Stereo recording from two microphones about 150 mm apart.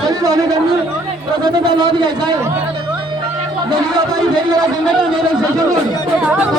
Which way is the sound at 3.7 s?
25° right (ahead or behind).